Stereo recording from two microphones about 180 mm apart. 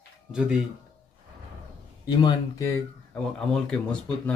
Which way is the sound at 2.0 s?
20° left (ahead or behind).